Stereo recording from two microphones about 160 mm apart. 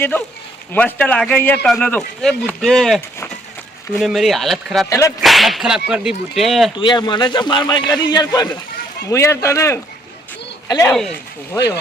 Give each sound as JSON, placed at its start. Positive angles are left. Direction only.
{"t": 0.7, "sound": "speech", "side_deg": 10}
{"t": 4.9, "sound": "speech", "side_deg": 20}
{"t": 5.2, "sound": "speech", "side_deg": 0}
{"t": 6.7, "sound": "speech", "side_deg": 30}